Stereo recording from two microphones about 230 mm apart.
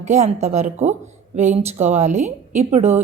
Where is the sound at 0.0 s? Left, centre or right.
Right.